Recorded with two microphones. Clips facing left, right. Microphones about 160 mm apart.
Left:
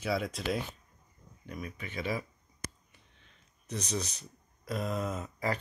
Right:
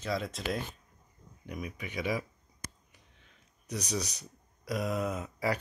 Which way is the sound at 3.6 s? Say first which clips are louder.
Right 1 dB; 10° right (ahead or behind).